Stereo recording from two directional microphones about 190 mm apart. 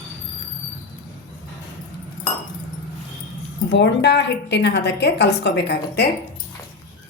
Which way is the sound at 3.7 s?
65° left (ahead or behind).